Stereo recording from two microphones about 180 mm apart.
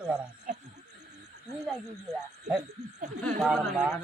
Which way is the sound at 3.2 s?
5° right (ahead or behind).